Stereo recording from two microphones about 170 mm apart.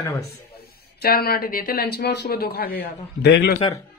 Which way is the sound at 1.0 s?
65° left (ahead or behind).